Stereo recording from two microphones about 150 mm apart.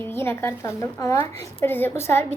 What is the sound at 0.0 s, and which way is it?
A woman's voice, 15° left (ahead or behind).